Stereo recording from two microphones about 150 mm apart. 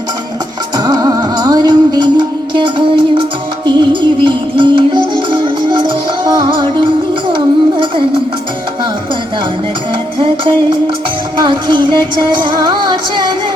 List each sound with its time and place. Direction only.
0.8 s music: 25° right (ahead or behind)
10.2 s music: 30° right (ahead or behind)